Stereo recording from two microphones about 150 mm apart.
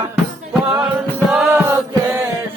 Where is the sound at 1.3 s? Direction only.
10° right (ahead or behind).